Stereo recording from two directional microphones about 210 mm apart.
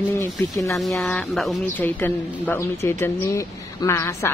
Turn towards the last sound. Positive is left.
turn(degrees=15)  # may be behind; listen again after turning